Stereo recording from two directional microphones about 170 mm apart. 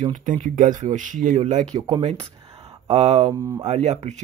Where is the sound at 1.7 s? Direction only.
25° right (ahead or behind).